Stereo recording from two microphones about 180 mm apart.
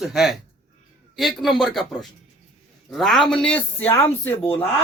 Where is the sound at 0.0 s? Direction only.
Centre (ahead or behind).